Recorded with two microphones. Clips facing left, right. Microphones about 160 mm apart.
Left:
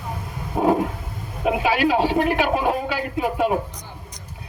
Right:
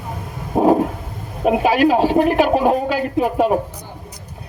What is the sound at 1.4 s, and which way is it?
A man's voice, 40° right (ahead or behind).